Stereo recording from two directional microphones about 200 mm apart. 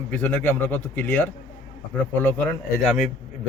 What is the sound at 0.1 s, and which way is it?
A man's voice, 10° left (ahead or behind).